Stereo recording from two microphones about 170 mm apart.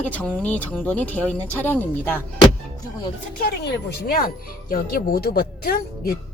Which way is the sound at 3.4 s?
80° left.